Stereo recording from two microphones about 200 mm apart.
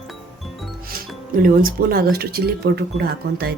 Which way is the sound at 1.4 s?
45° right (ahead or behind).